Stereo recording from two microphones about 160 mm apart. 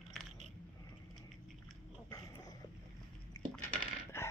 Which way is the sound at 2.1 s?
25° left (ahead or behind).